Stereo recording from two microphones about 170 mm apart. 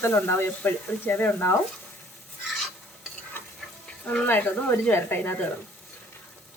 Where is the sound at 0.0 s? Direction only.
15° left (ahead or behind).